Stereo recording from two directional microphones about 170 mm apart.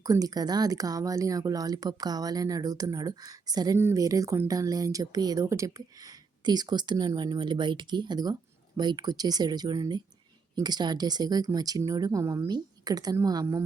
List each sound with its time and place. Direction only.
0.0 s speech: 20° right (ahead or behind)